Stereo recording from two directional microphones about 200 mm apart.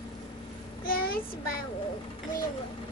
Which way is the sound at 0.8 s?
45° left (ahead or behind).